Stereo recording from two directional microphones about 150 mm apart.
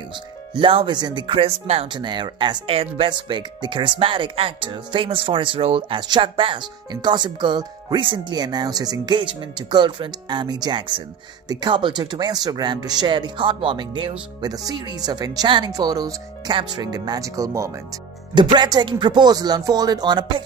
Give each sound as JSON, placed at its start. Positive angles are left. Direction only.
{"t": 0.6, "sound": "speech", "side_deg": -35}
{"t": 1.9, "sound": "speech", "side_deg": -30}